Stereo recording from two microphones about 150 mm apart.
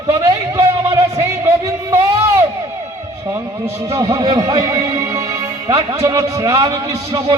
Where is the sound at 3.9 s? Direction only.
20° right (ahead or behind).